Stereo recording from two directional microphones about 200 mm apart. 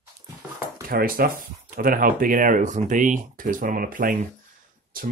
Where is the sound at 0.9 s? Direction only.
45° right (ahead or behind).